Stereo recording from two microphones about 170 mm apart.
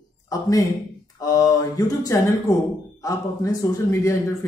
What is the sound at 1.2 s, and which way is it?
Speech, 20° left (ahead or behind).